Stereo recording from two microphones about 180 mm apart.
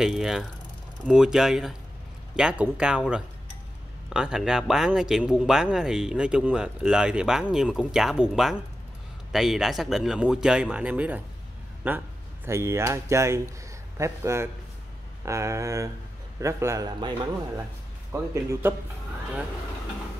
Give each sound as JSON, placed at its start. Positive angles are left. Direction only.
{"t": 0.0, "sound": "speech", "side_deg": 0}
{"t": 18.1, "sound": "speech", "side_deg": -15}